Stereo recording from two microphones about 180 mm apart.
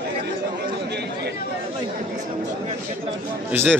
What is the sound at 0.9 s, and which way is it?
Speech, 65° right (ahead or behind).